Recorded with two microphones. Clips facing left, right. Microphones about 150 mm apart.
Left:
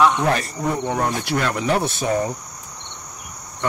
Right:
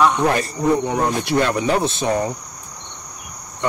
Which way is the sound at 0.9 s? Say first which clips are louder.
Right 4 dB; 25° right (ahead or behind).